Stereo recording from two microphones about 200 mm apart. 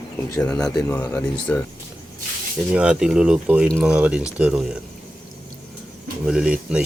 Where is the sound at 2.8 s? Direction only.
5° right (ahead or behind).